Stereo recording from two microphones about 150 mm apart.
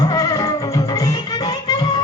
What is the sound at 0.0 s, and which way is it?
Music, 25° left (ahead or behind).